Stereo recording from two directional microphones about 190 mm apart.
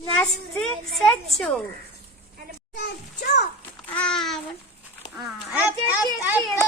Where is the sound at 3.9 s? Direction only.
5° left (ahead or behind).